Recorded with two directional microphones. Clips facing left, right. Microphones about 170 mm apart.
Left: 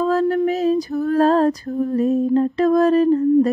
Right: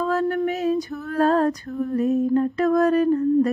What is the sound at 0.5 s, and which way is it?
Female singing, 35° left (ahead or behind).